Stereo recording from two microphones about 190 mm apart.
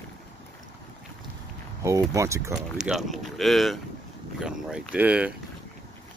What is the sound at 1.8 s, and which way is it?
Speech, 15° right (ahead or behind).